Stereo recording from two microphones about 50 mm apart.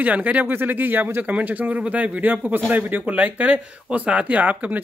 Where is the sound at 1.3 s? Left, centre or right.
Right.